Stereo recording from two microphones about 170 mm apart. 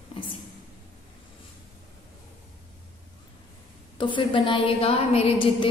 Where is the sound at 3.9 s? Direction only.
30° left (ahead or behind).